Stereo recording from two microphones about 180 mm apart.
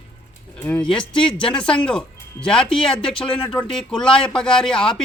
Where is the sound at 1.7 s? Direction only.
5° left (ahead or behind).